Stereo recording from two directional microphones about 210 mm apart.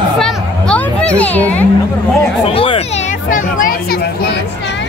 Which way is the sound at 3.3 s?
40° left (ahead or behind).